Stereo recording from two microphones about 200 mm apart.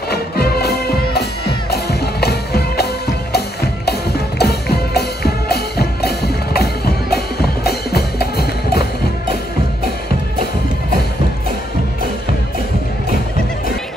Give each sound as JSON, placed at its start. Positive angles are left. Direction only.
{"t": 0.1, "sound": "music", "side_deg": 50}
{"t": 4.4, "sound": "music", "side_deg": 50}